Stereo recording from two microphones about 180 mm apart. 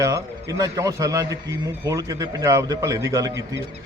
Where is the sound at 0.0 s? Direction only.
20° right (ahead or behind).